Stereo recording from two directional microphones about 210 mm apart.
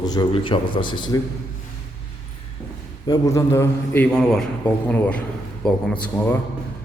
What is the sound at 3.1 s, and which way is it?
A man's voice, 15° left (ahead or behind).